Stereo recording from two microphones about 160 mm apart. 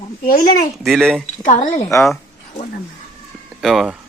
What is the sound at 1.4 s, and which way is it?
Speech, 50° left (ahead or behind).